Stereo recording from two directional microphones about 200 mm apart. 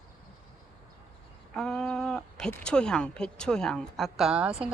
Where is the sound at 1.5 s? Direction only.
Centre (ahead or behind).